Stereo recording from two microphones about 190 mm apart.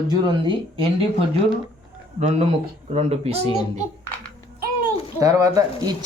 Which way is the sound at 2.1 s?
35° right (ahead or behind).